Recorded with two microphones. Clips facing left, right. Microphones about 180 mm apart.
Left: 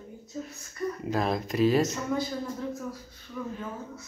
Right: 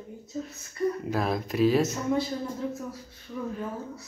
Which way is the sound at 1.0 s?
Centre (ahead or behind).